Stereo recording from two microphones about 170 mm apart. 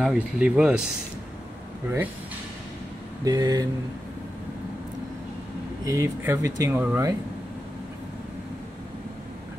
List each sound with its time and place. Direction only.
0.0 s speech: 5° right (ahead or behind)
3.3 s a sound: 20° right (ahead or behind)
5.9 s speech: 15° right (ahead or behind)